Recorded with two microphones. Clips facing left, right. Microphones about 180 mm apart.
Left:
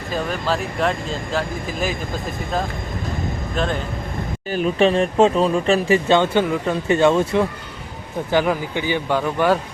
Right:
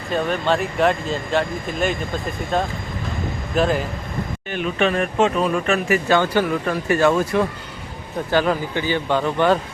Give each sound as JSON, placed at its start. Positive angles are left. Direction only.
{"t": 0.1, "sound": "speech", "side_deg": 0}
{"t": 3.5, "sound": "speech", "side_deg": -5}
{"t": 4.5, "sound": "speech", "side_deg": 35}